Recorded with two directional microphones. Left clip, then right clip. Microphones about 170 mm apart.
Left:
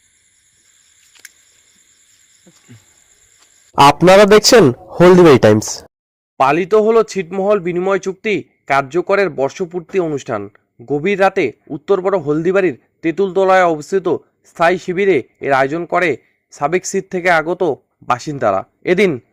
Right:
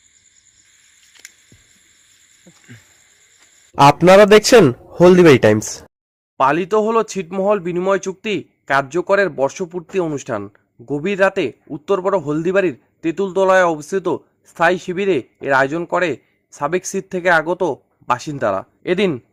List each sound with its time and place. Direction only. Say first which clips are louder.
3.9 s a man's voice: left 1 dB; 20° left (ahead or behind)